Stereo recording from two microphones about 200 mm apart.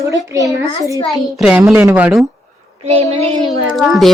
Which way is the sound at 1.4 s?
5° right (ahead or behind).